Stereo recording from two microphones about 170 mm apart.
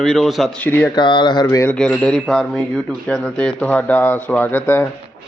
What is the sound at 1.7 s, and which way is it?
A man's voice, 5° left (ahead or behind).